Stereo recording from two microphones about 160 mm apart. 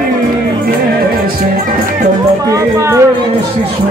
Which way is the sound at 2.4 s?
20° right (ahead or behind).